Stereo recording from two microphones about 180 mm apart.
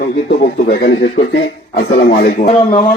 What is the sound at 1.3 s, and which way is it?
Speech, 75° left (ahead or behind).